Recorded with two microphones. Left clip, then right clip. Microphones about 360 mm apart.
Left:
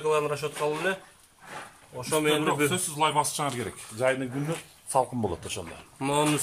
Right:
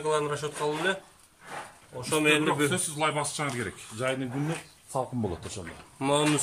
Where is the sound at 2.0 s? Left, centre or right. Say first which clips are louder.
Right 1 dB; centre.